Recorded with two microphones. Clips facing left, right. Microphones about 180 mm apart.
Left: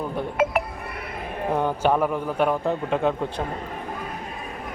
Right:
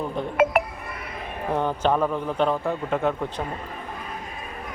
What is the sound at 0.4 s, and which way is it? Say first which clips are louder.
Chink: right 3 dB; 60° right (ahead or behind).